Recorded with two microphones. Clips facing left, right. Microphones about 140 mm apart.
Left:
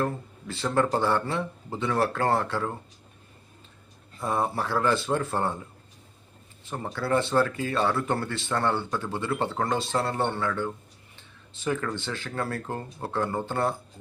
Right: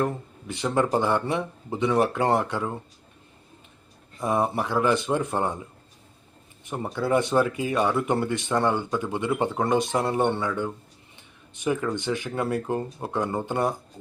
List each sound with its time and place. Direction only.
0.0 s speech: 15° right (ahead or behind)
4.2 s speech: 15° right (ahead or behind)
6.7 s speech: 15° right (ahead or behind)